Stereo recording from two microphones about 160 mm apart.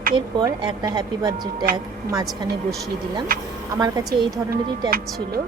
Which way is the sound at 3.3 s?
65° right (ahead or behind).